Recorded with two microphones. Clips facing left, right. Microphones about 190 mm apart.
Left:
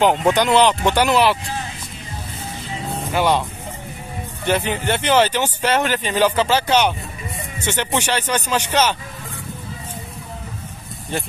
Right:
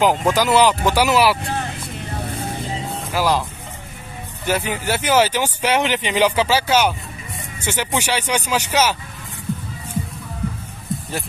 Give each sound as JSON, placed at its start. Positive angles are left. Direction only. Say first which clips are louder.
{"t": 0.0, "sound": "speech", "louder": "left 1 dB", "side_deg": 0}
{"t": 1.4, "sound": "speech", "louder": "right 3 dB", "side_deg": -60}
{"t": 3.1, "sound": "speech", "louder": "left 1 dB", "side_deg": 0}
{"t": 4.5, "sound": "speech", "louder": "left 1 dB", "side_deg": -10}